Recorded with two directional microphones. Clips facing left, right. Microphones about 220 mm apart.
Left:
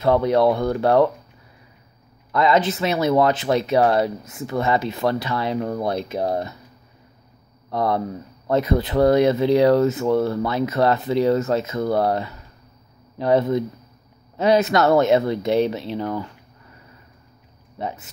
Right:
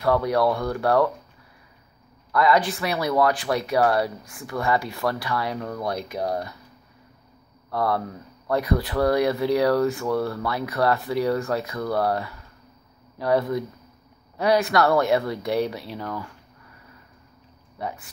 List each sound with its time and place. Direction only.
0.0 s speech: 25° left (ahead or behind)
2.3 s speech: 20° left (ahead or behind)
7.7 s speech: 20° left (ahead or behind)
17.7 s speech: 20° left (ahead or behind)